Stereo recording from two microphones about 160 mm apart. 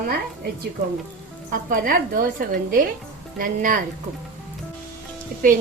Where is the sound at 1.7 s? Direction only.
60° right (ahead or behind).